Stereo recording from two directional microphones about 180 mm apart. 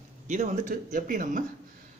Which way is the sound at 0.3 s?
40° right (ahead or behind).